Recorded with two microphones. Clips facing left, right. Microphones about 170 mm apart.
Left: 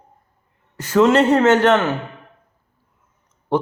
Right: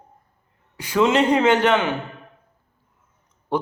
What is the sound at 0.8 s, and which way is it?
A man's voice, 10° right (ahead or behind).